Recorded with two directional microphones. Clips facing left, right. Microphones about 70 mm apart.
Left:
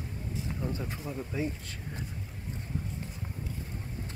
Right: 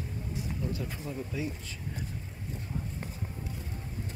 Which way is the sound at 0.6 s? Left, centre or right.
Left.